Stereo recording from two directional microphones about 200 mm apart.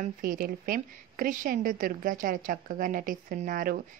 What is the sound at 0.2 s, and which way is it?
A woman's voice, 45° right (ahead or behind).